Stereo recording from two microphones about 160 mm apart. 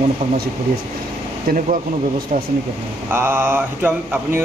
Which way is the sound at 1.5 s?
55° right (ahead or behind).